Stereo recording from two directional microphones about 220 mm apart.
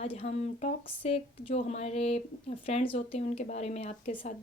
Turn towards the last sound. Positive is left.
turn(degrees=35)  # may be behind; listen again after turning